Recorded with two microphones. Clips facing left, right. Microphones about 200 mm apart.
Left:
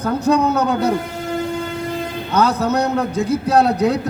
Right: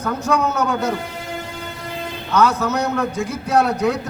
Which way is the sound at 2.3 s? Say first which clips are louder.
Left 1 dB; 35° left (ahead or behind).